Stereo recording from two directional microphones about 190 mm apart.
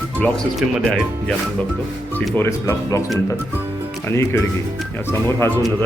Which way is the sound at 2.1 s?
10° left (ahead or behind).